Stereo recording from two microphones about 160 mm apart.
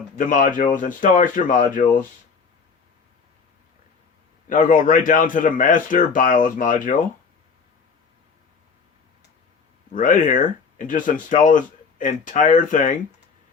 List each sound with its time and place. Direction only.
0.2 s speech: 55° left (ahead or behind)
4.4 s speech: 55° left (ahead or behind)
9.9 s speech: 55° left (ahead or behind)